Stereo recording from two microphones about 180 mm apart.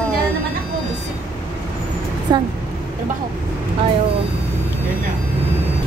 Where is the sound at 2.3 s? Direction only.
25° right (ahead or behind).